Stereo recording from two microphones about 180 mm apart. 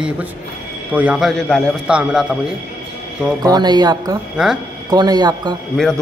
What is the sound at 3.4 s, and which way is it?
Speech, 20° right (ahead or behind).